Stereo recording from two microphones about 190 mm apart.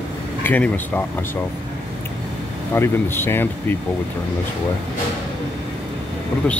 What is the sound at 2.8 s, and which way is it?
Speech, 10° left (ahead or behind).